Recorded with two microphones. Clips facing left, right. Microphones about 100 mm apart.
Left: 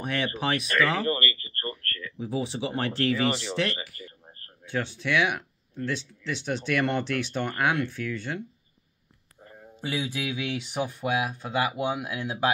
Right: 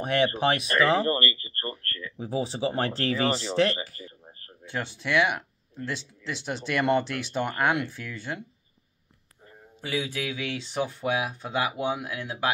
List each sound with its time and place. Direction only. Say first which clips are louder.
0.0 s speech: right 5 dB; 35° right (ahead or behind)
2.1 s speech: right 1 dB; 35° right (ahead or behind)
4.6 s speech: left 2 dB; centre (ahead or behind)
9.8 s speech: even; 20° left (ahead or behind)